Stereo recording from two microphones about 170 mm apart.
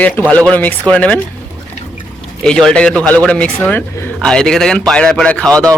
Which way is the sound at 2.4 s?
5° left (ahead or behind).